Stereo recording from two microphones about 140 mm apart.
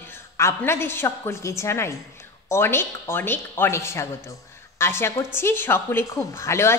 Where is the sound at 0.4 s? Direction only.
20° left (ahead or behind).